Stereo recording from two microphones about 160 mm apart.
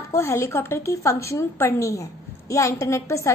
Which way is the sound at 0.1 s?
15° left (ahead or behind).